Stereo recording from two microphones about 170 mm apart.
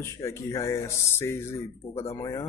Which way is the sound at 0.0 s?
15° left (ahead or behind).